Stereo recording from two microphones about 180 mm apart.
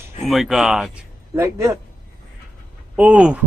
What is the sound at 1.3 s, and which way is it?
Speech, 15° right (ahead or behind).